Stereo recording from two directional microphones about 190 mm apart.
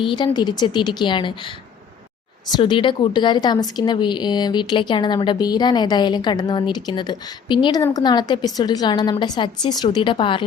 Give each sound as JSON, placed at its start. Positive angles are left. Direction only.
{"t": 0.0, "sound": "a woman's voice", "side_deg": 25}
{"t": 2.6, "sound": "a woman's voice", "side_deg": 25}